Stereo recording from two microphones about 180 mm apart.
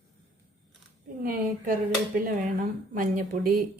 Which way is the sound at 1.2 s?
50° right (ahead or behind).